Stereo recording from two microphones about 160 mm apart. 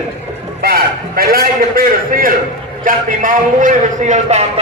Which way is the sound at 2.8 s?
55° right (ahead or behind).